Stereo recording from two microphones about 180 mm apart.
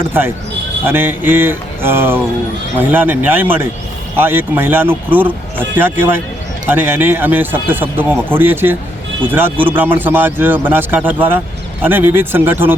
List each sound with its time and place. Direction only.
0.9 s speech: 10° right (ahead or behind)